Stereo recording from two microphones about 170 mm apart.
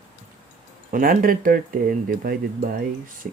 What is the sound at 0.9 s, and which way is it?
Speech, 55° right (ahead or behind).